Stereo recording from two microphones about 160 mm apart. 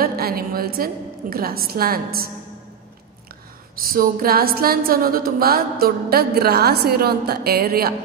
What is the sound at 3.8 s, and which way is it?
Speech, 65° right (ahead or behind).